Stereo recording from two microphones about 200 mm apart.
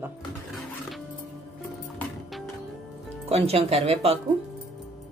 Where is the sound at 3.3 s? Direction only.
30° right (ahead or behind).